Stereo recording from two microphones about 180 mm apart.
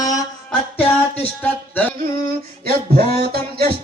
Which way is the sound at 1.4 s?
10° left (ahead or behind).